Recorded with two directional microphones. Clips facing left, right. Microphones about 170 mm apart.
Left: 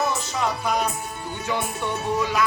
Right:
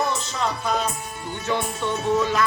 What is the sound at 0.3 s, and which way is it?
Music, 10° left (ahead or behind).